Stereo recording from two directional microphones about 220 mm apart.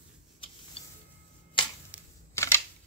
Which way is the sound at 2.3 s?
10° left (ahead or behind).